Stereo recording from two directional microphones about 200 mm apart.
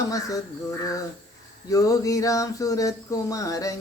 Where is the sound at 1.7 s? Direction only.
15° left (ahead or behind).